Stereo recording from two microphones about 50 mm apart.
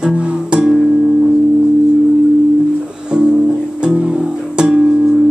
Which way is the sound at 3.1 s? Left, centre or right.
Centre.